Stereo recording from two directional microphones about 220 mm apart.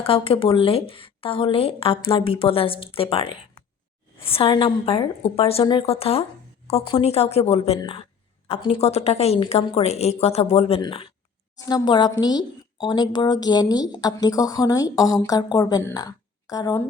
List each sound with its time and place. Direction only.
0.0 s speech: 25° left (ahead or behind)